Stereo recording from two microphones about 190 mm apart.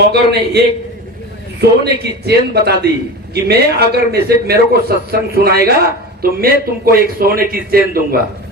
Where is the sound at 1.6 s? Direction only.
60° right (ahead or behind).